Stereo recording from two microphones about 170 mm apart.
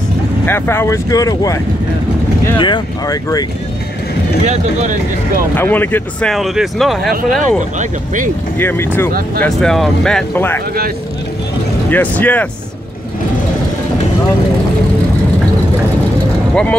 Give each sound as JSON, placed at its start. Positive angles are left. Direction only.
{"t": 0.5, "sound": "speech", "side_deg": 15}
{"t": 4.5, "sound": "speech", "side_deg": -45}
{"t": 5.6, "sound": "speech", "side_deg": 10}
{"t": 6.3, "sound": "speech", "side_deg": 0}
{"t": 7.2, "sound": "speech", "side_deg": -50}
{"t": 8.5, "sound": "speech", "side_deg": 15}
{"t": 11.9, "sound": "speech", "side_deg": 10}